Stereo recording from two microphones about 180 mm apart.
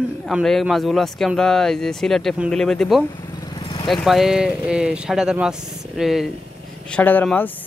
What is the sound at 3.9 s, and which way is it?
A man's voice, centre (ahead or behind).